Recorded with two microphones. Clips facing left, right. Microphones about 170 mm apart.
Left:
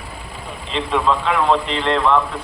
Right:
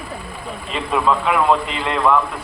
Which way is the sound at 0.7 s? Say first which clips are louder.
Even; 5° right (ahead or behind).